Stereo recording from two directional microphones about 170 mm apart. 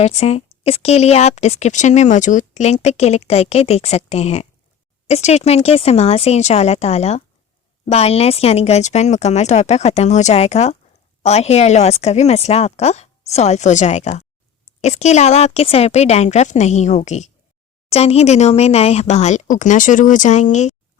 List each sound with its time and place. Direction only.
0.0 s speech: 40° left (ahead or behind)